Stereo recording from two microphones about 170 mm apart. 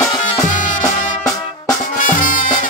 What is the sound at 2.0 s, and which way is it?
Music, 50° left (ahead or behind).